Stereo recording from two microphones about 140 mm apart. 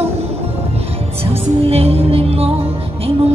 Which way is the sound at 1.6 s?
45° right (ahead or behind).